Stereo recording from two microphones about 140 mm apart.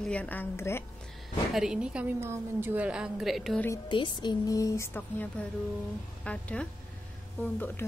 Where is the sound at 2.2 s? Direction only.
15° right (ahead or behind); by 3.6 s centre (ahead or behind).